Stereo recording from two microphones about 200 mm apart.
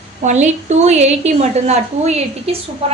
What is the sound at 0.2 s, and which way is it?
A woman's voice, 35° right (ahead or behind).